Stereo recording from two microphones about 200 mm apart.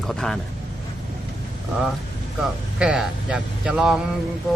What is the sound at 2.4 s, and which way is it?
Speech, 5° right (ahead or behind).